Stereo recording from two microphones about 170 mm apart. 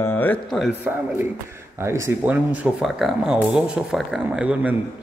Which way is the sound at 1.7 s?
15° right (ahead or behind).